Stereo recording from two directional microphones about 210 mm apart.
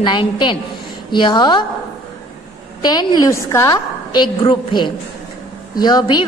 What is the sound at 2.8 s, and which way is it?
A woman's voice, 20° left (ahead or behind).